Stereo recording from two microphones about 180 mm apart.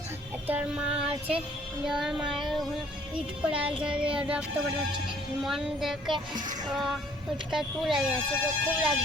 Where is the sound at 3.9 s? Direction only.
5° right (ahead or behind).